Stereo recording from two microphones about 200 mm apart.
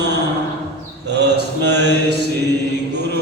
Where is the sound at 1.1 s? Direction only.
55° right (ahead or behind).